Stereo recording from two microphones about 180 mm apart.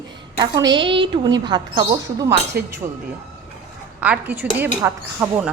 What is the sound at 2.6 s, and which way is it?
Speech, 60° right (ahead or behind).